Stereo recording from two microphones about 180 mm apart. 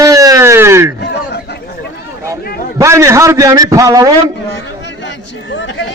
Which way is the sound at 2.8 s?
15° right (ahead or behind).